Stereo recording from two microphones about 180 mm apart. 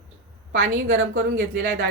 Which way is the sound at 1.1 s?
60° right (ahead or behind).